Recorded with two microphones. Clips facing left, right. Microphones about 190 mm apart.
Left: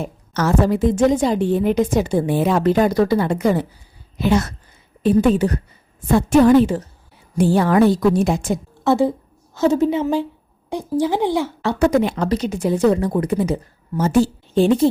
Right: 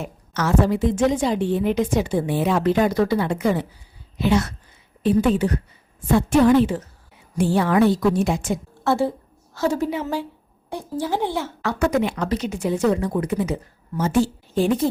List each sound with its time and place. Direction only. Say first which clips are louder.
0.0 s a woman's voice: left 4 dB; 40° left (ahead or behind)
8.8 s a woman's voice: left 5 dB; 20° left (ahead or behind)
11.6 s a woman's voice: left 3 dB; 30° left (ahead or behind)
14.5 s a woman's voice: left 5 dB; 25° left (ahead or behind)